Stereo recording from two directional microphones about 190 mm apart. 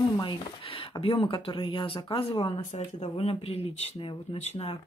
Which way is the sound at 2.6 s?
35° left (ahead or behind).